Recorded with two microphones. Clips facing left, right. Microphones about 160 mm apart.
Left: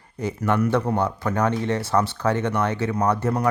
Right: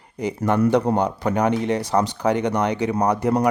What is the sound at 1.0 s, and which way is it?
Speech, 15° right (ahead or behind).